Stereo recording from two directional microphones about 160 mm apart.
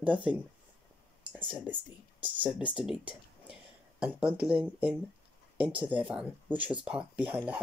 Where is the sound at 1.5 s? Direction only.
10° right (ahead or behind).